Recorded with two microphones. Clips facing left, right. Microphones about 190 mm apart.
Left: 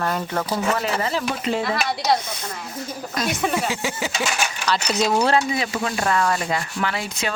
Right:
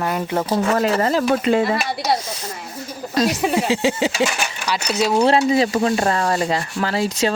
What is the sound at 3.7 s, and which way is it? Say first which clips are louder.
Speech: right 7 dB; 30° right (ahead or behind).